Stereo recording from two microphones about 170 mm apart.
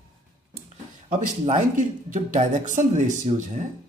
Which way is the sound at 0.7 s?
40° right (ahead or behind).